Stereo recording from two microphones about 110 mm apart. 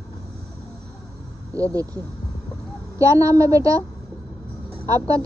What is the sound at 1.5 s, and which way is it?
Speech, 30° right (ahead or behind).